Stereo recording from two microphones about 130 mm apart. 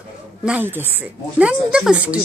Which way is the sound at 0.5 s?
15° right (ahead or behind).